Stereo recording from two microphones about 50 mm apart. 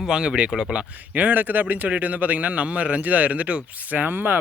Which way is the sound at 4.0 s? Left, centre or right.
Right.